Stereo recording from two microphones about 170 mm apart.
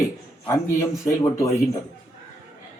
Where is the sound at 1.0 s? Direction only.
15° left (ahead or behind).